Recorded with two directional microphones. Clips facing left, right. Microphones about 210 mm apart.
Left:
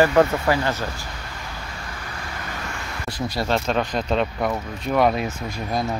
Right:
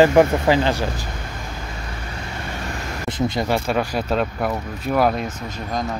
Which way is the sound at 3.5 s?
10° right (ahead or behind).